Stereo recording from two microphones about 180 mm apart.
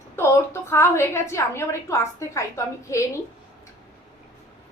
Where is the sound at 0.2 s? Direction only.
15° left (ahead or behind).